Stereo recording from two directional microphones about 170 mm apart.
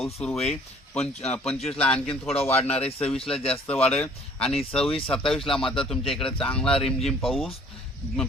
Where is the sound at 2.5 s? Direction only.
35° left (ahead or behind).